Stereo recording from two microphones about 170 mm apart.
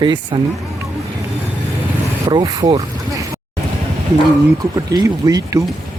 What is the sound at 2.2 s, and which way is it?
Speech, 25° right (ahead or behind).